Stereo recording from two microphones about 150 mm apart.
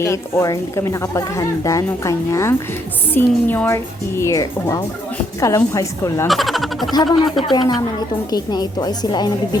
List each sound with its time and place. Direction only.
0.0 s a woman's voice: 20° left (ahead or behind)
6.2 s a sound: centre (ahead or behind)
6.9 s speech: 30° left (ahead or behind)
7.3 s speech: centre (ahead or behind)
7.5 s speech: 30° left (ahead or behind)